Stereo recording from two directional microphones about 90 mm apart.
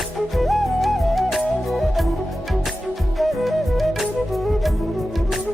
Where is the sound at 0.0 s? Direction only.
Centre (ahead or behind).